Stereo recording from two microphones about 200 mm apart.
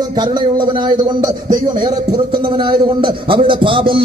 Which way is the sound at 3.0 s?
25° right (ahead or behind).